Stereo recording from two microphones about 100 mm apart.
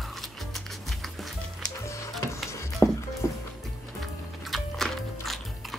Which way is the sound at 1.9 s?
30° left (ahead or behind).